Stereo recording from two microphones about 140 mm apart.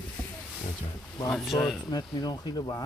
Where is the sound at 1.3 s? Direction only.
Centre (ahead or behind).